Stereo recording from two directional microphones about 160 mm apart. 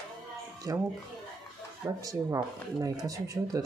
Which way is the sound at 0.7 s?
20° right (ahead or behind).